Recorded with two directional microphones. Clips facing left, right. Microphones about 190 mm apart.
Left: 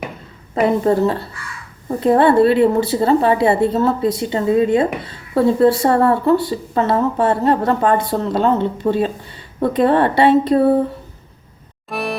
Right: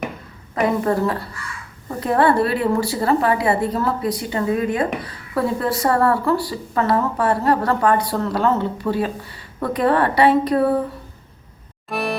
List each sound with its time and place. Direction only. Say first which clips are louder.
0.5 s a woman's voice: left 4 dB; 25° left (ahead or behind)
11.9 s music: even; centre (ahead or behind)